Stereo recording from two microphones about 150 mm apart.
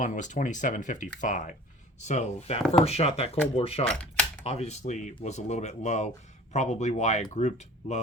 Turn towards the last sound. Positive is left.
turn(degrees=50)  # may be behind; listen again after turning